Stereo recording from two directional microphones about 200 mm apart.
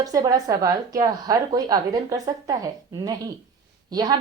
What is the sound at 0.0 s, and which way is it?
A woman's voice, 20° right (ahead or behind).